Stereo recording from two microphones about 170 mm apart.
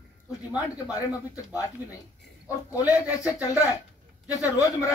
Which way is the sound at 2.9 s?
20° left (ahead or behind).